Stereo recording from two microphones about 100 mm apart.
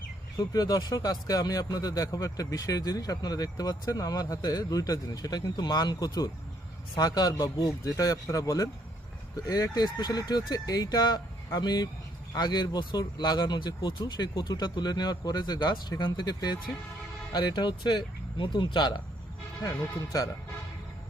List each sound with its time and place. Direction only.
0.3 s speech: 40° left (ahead or behind)